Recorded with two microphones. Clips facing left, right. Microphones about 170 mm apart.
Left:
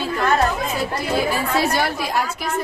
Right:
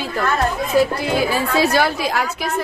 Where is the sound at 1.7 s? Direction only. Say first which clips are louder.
Right 3 dB; 90° right.